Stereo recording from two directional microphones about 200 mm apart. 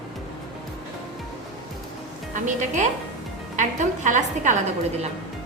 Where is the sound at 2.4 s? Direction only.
40° right (ahead or behind).